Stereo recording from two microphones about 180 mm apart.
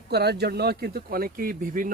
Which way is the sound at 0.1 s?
65° right (ahead or behind).